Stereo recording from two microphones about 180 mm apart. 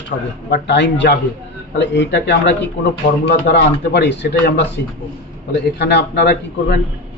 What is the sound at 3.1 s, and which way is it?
A man's voice, 60° left (ahead or behind).